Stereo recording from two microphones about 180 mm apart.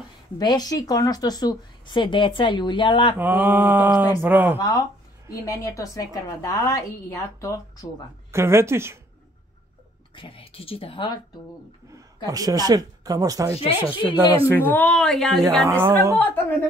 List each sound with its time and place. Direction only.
0.4 s a woman's voice: 20° left (ahead or behind)
3.2 s speech: 10° right (ahead or behind)
4.6 s a woman's voice: 20° left (ahead or behind)
8.3 s speech: 15° right (ahead or behind)
10.1 s speech: 30° left (ahead or behind)
12.3 s speech: 20° right (ahead or behind)
14.5 s a woman's voice: 10° left (ahead or behind)
15.6 s speech: 15° right (ahead or behind)
16.2 s a woman's voice: 10° left (ahead or behind)